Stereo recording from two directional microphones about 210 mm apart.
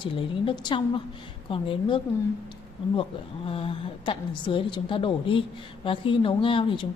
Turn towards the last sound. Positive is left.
turn(degrees=25)  # may be behind; listen again after turning